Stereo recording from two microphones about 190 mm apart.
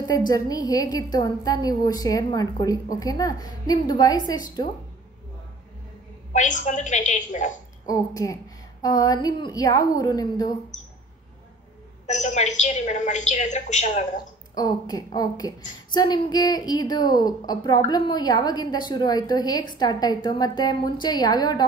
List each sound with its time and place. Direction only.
0.0 s a woman's voice: 20° left (ahead or behind)
6.3 s a woman's voice: 40° left (ahead or behind)
7.8 s a woman's voice: 20° left (ahead or behind)
12.1 s a woman's voice: 40° left (ahead or behind)
14.5 s a woman's voice: 20° left (ahead or behind)